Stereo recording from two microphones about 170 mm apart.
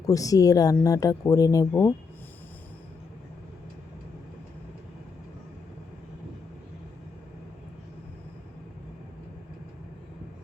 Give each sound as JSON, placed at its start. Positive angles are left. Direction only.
{"t": 0.0, "sound": "speech", "side_deg": 20}